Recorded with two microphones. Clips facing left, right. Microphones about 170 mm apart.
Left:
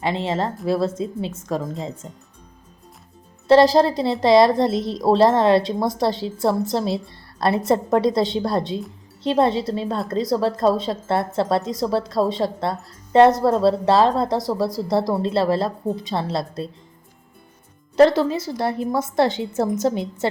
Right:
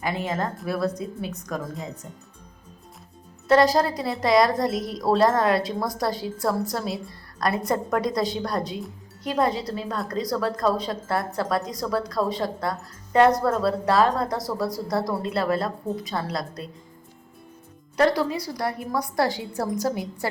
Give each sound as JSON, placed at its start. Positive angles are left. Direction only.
{"t": 0.0, "sound": "a woman's voice", "side_deg": 25}
{"t": 3.4, "sound": "a woman's voice", "side_deg": 25}
{"t": 17.9, "sound": "a woman's voice", "side_deg": 25}